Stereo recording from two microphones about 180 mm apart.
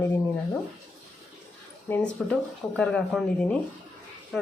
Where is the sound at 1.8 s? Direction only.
10° left (ahead or behind).